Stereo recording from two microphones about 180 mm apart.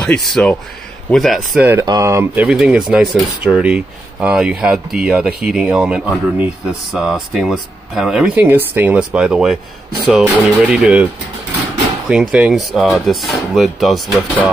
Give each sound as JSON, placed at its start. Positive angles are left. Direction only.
{"t": 0.0, "sound": "speech", "side_deg": 0}
{"t": 1.7, "sound": "speech", "side_deg": -15}
{"t": 2.4, "sound": "speech", "side_deg": -5}
{"t": 12.1, "sound": "speech", "side_deg": -5}